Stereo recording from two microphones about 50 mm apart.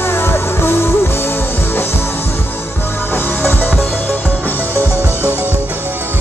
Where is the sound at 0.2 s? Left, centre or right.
Left.